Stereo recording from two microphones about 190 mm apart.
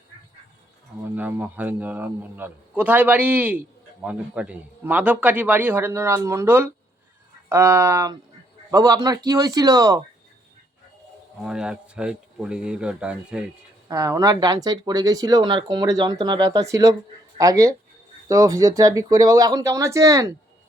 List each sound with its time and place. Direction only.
1.0 s a man's voice: 10° right (ahead or behind)
11.4 s speech: 5° right (ahead or behind)
13.8 s a man's voice: 15° right (ahead or behind)